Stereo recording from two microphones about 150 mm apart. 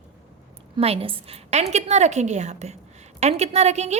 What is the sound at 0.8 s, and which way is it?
A woman's voice, 40° right (ahead or behind).